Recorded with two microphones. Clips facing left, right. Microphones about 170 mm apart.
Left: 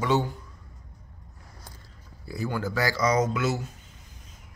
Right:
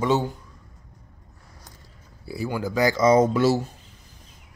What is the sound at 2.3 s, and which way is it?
Speech, 10° right (ahead or behind).